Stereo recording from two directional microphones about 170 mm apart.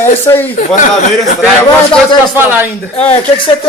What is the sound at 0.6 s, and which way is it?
Speech, 45° left (ahead or behind).